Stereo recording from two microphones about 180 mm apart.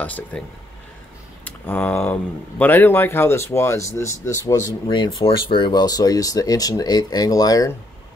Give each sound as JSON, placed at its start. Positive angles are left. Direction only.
{"t": 0.0, "sound": "speech", "side_deg": 10}
{"t": 1.4, "sound": "speech", "side_deg": 10}